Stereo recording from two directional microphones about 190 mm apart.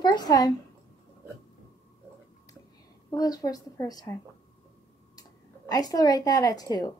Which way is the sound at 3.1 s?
20° left (ahead or behind).